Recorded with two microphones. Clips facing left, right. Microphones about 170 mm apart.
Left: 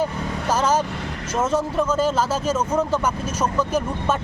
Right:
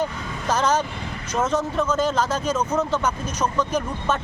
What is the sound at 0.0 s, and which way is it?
Vehicle, 10° left (ahead or behind).